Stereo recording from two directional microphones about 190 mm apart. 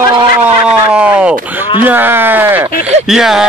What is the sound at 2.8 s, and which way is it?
Speech, 35° right (ahead or behind).